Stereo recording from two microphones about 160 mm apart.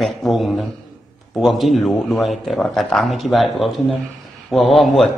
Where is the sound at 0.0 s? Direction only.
Centre (ahead or behind).